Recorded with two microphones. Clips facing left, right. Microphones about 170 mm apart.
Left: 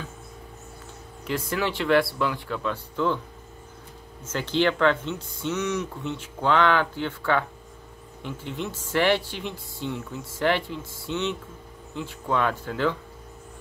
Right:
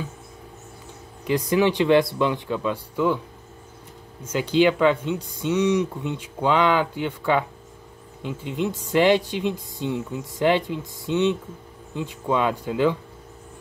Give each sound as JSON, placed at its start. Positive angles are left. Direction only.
{"t": 1.2, "sound": "speech", "side_deg": -15}
{"t": 4.2, "sound": "speech", "side_deg": -10}